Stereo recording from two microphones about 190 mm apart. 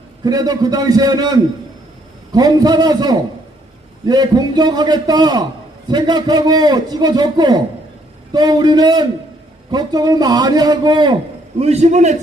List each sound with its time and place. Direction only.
0.3 s a man's voice: 20° right (ahead or behind)
11.6 s a man's voice: 35° right (ahead or behind)